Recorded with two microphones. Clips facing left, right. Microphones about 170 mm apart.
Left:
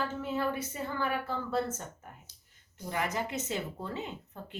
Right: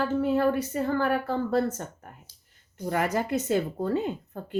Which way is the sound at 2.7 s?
50° right (ahead or behind).